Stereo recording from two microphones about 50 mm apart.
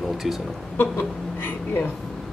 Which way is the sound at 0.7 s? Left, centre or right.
Left.